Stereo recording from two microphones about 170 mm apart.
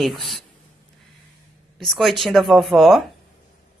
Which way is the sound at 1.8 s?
Centre (ahead or behind).